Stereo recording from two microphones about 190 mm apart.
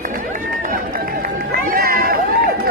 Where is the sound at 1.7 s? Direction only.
50° right (ahead or behind).